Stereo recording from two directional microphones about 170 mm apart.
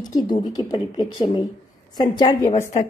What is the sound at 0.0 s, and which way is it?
A woman's voice, 25° left (ahead or behind).